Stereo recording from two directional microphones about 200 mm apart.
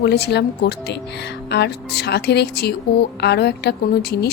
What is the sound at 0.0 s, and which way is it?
Speech, 55° left (ahead or behind).